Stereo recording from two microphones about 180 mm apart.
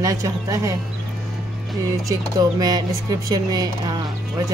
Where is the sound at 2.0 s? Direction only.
20° right (ahead or behind).